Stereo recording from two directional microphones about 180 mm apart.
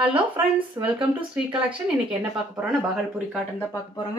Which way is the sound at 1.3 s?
5° right (ahead or behind).